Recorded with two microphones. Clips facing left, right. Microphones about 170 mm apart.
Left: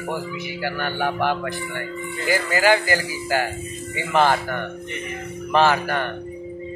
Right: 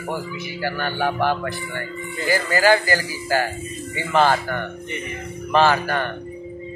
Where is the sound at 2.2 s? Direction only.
15° left (ahead or behind).